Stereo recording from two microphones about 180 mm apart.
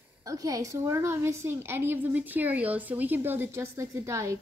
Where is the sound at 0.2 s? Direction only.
20° right (ahead or behind).